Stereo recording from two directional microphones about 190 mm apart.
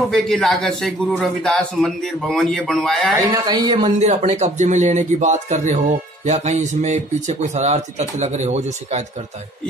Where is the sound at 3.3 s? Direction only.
20° right (ahead or behind).